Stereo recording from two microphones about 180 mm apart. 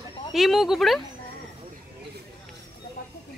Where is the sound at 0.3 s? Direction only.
Centre (ahead or behind).